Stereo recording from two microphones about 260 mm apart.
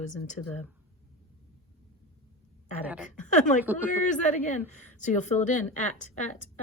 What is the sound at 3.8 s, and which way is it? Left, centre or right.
Speech, left.